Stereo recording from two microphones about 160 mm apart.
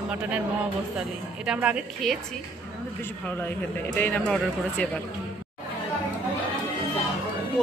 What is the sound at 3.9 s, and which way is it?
Speech, 10° left (ahead or behind).